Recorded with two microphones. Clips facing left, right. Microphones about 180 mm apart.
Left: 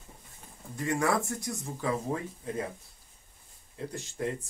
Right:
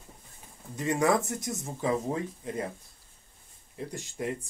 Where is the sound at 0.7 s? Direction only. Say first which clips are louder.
Right 3 dB; 20° right (ahead or behind).